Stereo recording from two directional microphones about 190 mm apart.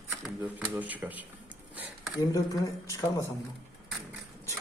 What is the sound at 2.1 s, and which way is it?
Speech, 15° left (ahead or behind).